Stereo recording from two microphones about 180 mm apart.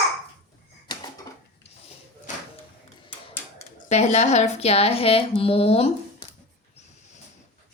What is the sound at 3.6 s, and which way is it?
Speech, 40° left (ahead or behind).